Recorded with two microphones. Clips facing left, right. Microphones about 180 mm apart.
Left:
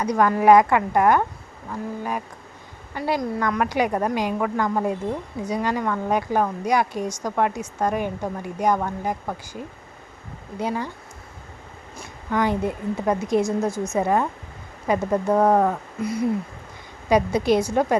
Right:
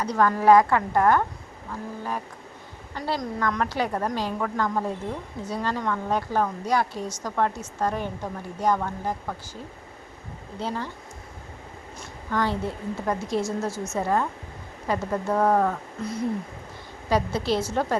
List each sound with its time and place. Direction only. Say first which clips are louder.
0.0 s a woman's voice: left 3 dB; 15° left (ahead or behind)
2.9 s a woman's voice: left 5 dB; 10° left (ahead or behind)
10.6 s a woman's voice: left 4 dB; 15° left (ahead or behind)
11.9 s a woman's voice: left 3 dB; 15° left (ahead or behind)